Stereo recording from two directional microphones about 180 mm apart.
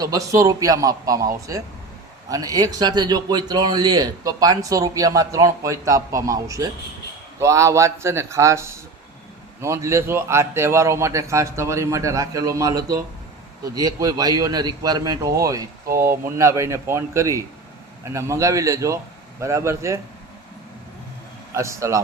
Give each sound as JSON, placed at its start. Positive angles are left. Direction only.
{"t": 0.0, "sound": "a man's voice", "side_deg": -20}
{"t": 2.3, "sound": "a man's voice", "side_deg": -20}
{"t": 15.9, "sound": "speech", "side_deg": -50}
{"t": 16.2, "sound": "a man's voice", "side_deg": -15}
{"t": 21.5, "sound": "a man's voice", "side_deg": -15}